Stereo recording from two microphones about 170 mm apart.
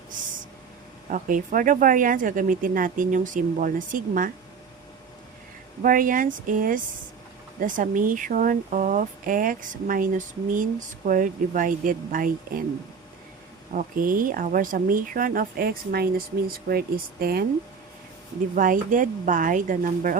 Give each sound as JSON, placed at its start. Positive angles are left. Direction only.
{"t": 1.1, "sound": "speech", "side_deg": -50}
{"t": 5.8, "sound": "speech", "side_deg": -55}
{"t": 13.7, "sound": "speech", "side_deg": -55}
{"t": 18.5, "sound": "speech", "side_deg": -55}